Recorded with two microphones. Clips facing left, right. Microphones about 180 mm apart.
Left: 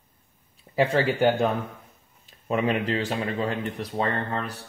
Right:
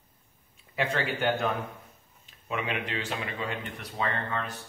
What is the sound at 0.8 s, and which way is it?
Speech, 35° left (ahead or behind).